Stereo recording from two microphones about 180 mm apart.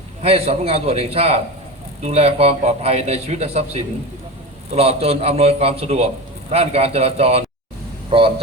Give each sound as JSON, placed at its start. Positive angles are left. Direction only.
{"t": 0.2, "sound": "a man's voice", "side_deg": -35}